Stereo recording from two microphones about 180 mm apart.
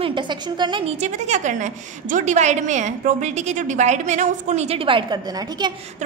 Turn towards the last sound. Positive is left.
turn(degrees=-25)  # may be behind; listen again after turning